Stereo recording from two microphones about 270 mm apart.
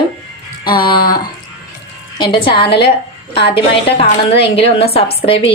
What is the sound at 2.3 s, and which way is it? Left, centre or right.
A woman's voice, centre.